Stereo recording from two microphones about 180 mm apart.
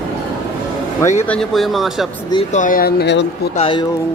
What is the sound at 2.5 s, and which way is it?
Speech, 45° left (ahead or behind).